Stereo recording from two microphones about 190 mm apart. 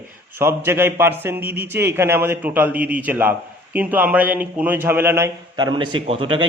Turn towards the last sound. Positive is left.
turn(degrees=-30)  # may be behind; listen again after turning